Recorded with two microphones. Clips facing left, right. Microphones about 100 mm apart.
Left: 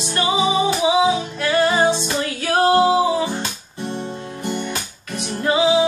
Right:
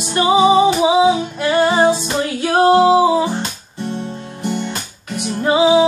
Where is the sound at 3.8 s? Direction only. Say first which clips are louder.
Right 2 dB; 15° left (ahead or behind).